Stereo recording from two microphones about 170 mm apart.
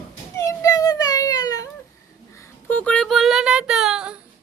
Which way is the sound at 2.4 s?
10° left (ahead or behind).